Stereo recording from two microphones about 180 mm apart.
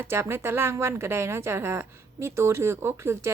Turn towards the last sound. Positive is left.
turn(degrees=-15)  # may be behind; listen again after turning